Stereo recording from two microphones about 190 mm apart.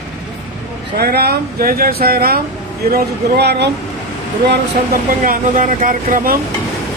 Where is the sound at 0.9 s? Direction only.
55° right (ahead or behind).